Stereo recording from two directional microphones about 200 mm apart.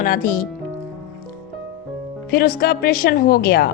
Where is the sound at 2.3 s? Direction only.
50° left (ahead or behind).